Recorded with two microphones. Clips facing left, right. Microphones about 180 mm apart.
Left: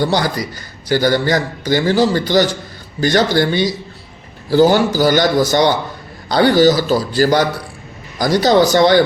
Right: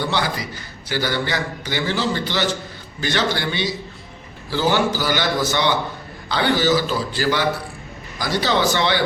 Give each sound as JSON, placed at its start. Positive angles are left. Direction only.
{"t": 0.0, "sound": "a man's voice", "side_deg": 40}